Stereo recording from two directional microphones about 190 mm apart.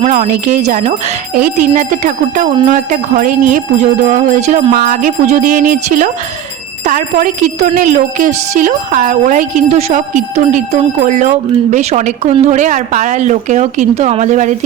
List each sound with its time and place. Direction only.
0.0 s speech: 40° right (ahead or behind)
2.6 s music: 40° right (ahead or behind)
6.8 s speech: 45° right (ahead or behind)